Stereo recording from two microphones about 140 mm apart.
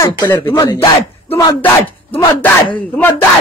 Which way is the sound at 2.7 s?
10° left (ahead or behind).